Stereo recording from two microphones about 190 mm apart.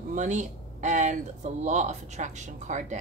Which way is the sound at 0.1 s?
40° right (ahead or behind).